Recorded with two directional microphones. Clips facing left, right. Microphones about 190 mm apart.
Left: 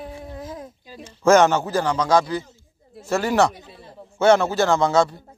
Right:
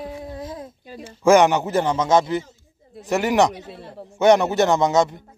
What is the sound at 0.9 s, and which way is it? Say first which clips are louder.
A man's voice: right 1 dB; 10° right (ahead or behind).